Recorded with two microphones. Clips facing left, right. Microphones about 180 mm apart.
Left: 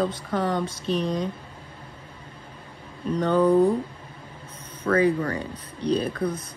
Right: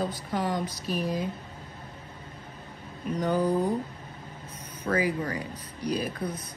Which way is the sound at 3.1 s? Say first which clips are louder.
Left 6 dB; 65° left (ahead or behind).